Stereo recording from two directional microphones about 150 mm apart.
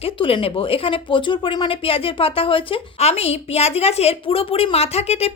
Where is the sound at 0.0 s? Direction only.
35° left (ahead or behind).